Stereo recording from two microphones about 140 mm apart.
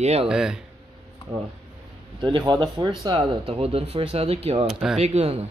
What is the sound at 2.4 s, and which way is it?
Speech, 25° right (ahead or behind).